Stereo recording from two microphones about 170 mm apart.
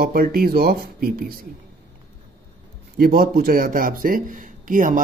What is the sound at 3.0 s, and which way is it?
Speech, 65° right (ahead or behind).